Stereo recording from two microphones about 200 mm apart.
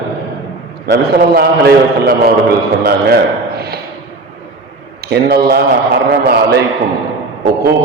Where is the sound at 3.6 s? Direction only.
50° right (ahead or behind).